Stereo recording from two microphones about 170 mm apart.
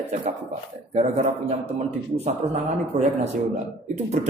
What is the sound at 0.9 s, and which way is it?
A man's voice, 40° right (ahead or behind).